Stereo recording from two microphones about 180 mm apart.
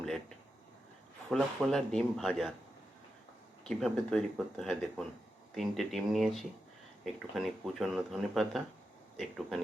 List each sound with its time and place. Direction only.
1.3 s speech: centre (ahead or behind)
3.7 s speech: 5° left (ahead or behind)